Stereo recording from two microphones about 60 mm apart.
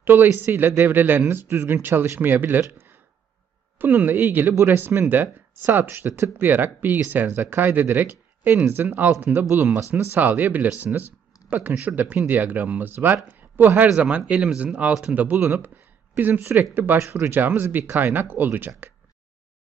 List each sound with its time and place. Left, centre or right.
0.0 s speech: right
3.7 s speech: right
9.8 s speech: right
10.2 s speech: right
13.9 s speech: centre
15.4 s speech: right
17.0 s speech: right